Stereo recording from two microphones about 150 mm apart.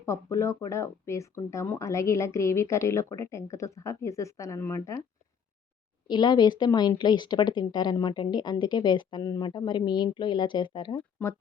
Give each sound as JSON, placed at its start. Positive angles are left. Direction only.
{"t": 0.0, "sound": "speech", "side_deg": 20}
{"t": 6.1, "sound": "speech", "side_deg": 30}